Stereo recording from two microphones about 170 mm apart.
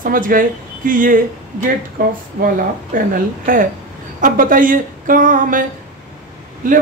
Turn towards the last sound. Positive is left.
turn(degrees=-50)  # may be behind; listen again after turning